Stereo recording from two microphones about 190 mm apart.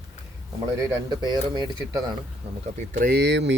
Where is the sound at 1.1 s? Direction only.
25° right (ahead or behind).